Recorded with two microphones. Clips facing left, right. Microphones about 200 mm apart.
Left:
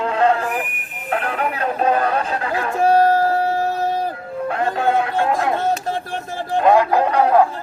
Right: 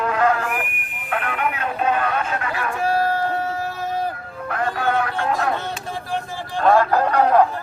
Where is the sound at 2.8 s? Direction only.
45° left (ahead or behind).